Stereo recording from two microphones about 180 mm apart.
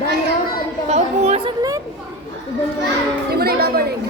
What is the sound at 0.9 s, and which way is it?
Speech, 35° right (ahead or behind).